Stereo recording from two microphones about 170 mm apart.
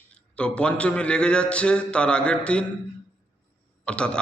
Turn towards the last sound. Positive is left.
turn(degrees=5)  # may be behind; listen again after turning